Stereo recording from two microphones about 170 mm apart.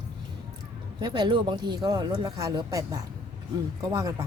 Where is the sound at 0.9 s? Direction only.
25° right (ahead or behind).